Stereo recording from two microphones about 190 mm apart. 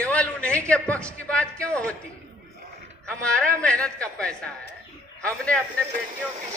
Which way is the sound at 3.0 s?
5° left (ahead or behind).